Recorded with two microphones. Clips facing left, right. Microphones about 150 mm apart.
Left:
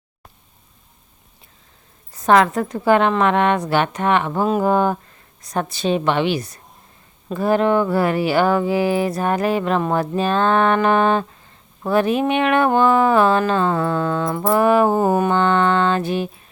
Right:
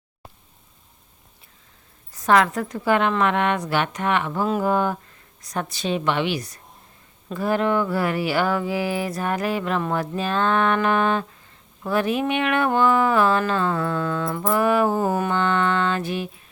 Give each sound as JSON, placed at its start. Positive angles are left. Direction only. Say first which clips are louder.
{"t": 2.1, "sound": "a woman's voice", "louder": "left 4 dB", "side_deg": 25}
{"t": 2.7, "sound": "mantra", "louder": "left 4 dB", "side_deg": 30}
{"t": 5.4, "sound": "a sound", "louder": "left 5 dB", "side_deg": 30}
{"t": 14.4, "sound": "mantra", "louder": "left 5 dB", "side_deg": 30}